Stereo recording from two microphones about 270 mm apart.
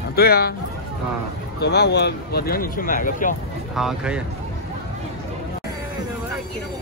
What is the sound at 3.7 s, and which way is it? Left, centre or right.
Speech, centre.